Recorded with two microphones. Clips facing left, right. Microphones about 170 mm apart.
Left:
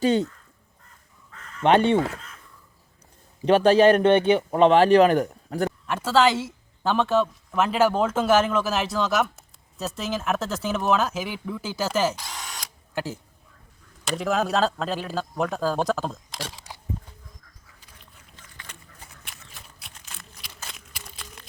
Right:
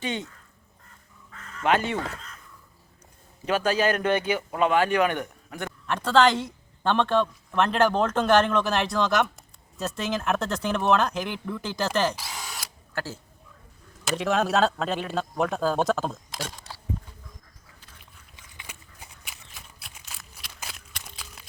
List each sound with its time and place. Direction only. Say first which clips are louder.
0.0 s a man's voice: left 10 dB; 40° left (ahead or behind)
1.6 s goose: left 6 dB; 30° left (ahead or behind)
3.4 s a man's voice: left 8 dB; 30° left (ahead or behind)
5.8 s speech: right 1 dB; 5° left (ahead or behind)
12.1 s drill: even; 5° right (ahead or behind)
12.9 s speech: left 3 dB; 15° left (ahead or behind)
14.0 s speech: even; centre (ahead or behind)
18.5 s a sound: even; 10° right (ahead or behind)